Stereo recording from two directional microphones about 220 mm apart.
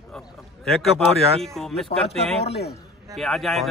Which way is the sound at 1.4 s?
Centre (ahead or behind).